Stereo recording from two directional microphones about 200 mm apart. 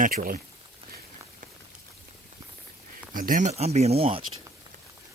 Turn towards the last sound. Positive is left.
turn(degrees=-30)  # may be behind; listen again after turning